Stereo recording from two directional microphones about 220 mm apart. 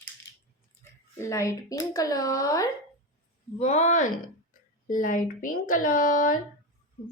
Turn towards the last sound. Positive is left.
turn(degrees=40)  # may be behind; listen again after turning